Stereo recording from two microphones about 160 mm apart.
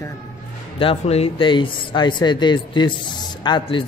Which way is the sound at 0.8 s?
40° left (ahead or behind).